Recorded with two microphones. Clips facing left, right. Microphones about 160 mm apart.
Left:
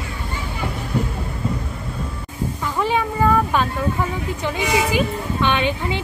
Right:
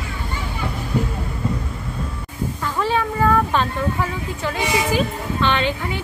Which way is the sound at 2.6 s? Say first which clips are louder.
Even; 15° left (ahead or behind).